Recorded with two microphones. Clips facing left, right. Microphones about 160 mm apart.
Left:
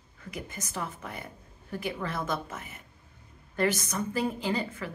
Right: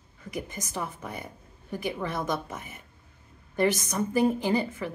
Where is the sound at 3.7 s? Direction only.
15° right (ahead or behind).